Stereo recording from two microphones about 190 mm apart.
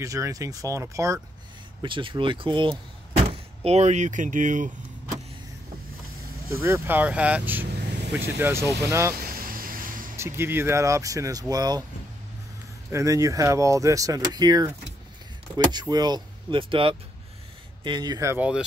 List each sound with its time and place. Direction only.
0.0 s speech: 15° right (ahead or behind); by 4.6 s 45° right (ahead or behind)
6.6 s speech: 10° right (ahead or behind)
9.1 s a sound: 50° right (ahead or behind)
10.1 s speech: 15° right (ahead or behind)
12.9 s speech: 15° right (ahead or behind)